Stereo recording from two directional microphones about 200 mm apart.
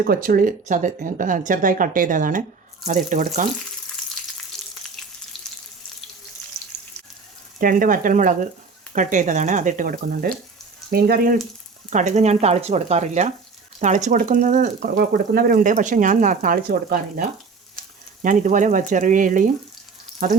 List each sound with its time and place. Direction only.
0.0 s speech: 45° right (ahead or behind)
7.6 s speech: 45° right (ahead or behind)
11.9 s speech: 40° right (ahead or behind)